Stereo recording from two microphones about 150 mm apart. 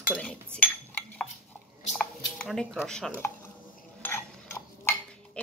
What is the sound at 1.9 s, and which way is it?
Squish, centre (ahead or behind).